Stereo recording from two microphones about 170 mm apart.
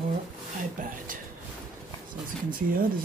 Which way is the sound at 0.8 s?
50° right (ahead or behind).